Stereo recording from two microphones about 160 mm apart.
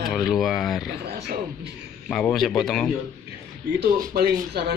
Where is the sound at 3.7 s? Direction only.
70° right (ahead or behind); by 4.8 s 90° right.